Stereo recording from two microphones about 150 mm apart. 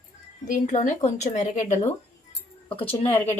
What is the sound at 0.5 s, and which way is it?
Speech, 55° left (ahead or behind).